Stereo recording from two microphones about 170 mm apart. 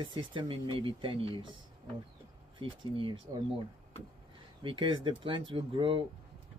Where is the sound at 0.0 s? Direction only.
30° right (ahead or behind).